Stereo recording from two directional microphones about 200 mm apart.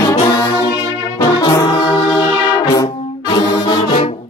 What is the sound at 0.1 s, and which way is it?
Brass instrument, 20° left (ahead or behind).